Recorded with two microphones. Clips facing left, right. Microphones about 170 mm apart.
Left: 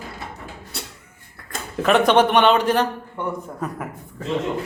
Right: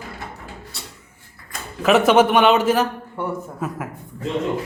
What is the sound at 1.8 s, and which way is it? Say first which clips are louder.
Speech: right 2 dB; 5° right (ahead or behind).